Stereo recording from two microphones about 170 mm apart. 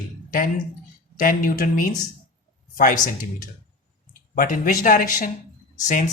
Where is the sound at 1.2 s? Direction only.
55° left (ahead or behind).